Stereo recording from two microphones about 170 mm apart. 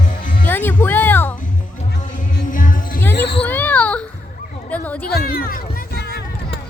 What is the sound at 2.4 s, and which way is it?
Music, 50° left (ahead or behind).